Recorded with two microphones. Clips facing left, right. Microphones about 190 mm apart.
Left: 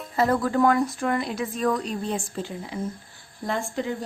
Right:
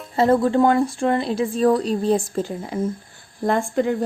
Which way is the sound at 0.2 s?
25° right (ahead or behind).